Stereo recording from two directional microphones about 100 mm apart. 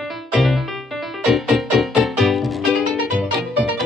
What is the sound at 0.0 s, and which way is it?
Music, centre (ahead or behind).